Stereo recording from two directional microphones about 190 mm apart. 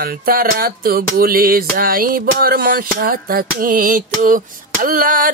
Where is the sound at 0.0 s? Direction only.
50° right (ahead or behind).